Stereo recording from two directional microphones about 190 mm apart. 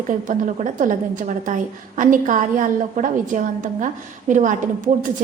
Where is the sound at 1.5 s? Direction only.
45° right (ahead or behind).